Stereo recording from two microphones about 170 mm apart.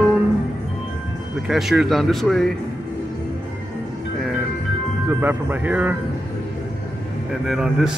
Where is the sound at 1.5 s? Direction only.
Centre (ahead or behind).